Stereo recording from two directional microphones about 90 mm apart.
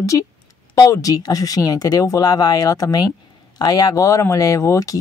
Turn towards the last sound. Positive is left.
turn(degrees=35)  # may be behind; listen again after turning